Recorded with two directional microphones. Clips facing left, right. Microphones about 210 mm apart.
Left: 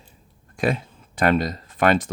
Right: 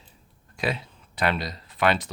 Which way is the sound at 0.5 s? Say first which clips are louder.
Left 6 dB; 50° left (ahead or behind).